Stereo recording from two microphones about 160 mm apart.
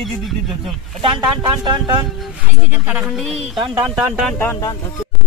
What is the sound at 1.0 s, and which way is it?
Speech, 30° right (ahead or behind).